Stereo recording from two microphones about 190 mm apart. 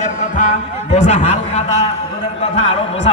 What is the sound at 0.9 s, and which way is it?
Speech, 35° left (ahead or behind).